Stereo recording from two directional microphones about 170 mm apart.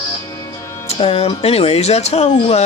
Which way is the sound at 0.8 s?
35° left (ahead or behind).